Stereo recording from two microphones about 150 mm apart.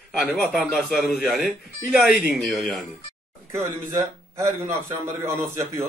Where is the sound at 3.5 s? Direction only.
20° right (ahead or behind).